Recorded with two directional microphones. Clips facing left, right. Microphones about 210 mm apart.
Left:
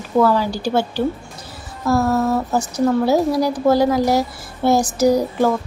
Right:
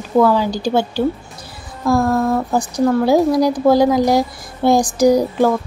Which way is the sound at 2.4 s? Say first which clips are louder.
Right 2 dB; 15° right (ahead or behind).